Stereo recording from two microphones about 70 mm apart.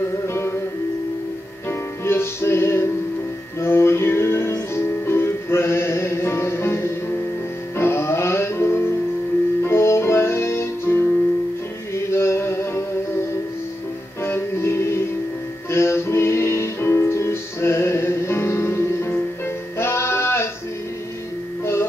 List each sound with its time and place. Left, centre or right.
0.3 s music: left
1.7 s music: left
11.9 s mantra: left
14.2 s music: left